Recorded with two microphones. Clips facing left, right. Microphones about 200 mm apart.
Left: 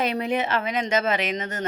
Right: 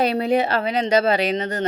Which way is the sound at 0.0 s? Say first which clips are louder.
Right 5 dB; 35° right (ahead or behind).